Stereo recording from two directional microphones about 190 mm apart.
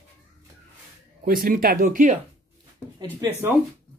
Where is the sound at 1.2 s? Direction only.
50° right (ahead or behind).